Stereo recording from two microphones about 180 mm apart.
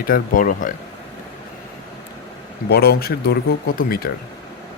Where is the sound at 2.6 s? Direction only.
60° left (ahead or behind).